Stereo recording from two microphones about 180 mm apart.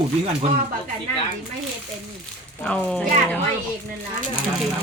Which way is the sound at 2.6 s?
5° left (ahead or behind).